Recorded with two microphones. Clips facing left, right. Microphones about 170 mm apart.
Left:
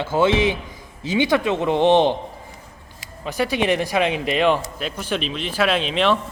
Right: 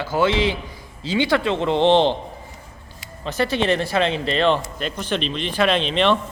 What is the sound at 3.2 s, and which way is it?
A man's voice, 10° left (ahead or behind).